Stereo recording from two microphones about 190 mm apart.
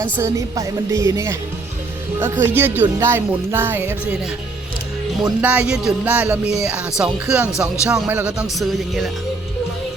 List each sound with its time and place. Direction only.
0.0 s speech: 15° right (ahead or behind)
5.4 s speech: 10° right (ahead or behind)